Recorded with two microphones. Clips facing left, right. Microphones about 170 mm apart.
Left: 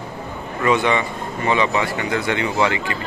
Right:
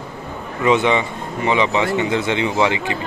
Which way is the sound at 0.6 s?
20° right (ahead or behind).